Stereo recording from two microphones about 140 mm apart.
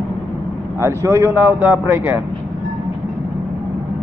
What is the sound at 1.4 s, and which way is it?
Speech, 10° right (ahead or behind).